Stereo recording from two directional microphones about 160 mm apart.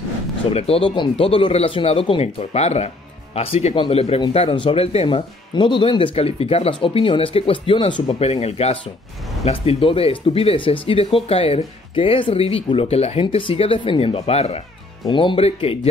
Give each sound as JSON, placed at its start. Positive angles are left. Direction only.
{"t": 0.5, "sound": "speech", "side_deg": 40}